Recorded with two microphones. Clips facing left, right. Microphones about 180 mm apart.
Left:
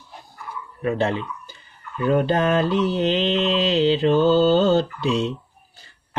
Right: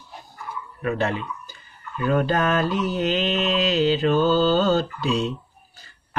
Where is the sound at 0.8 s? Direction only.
25° left (ahead or behind).